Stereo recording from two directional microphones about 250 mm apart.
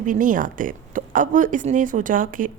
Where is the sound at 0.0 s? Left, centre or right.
Right.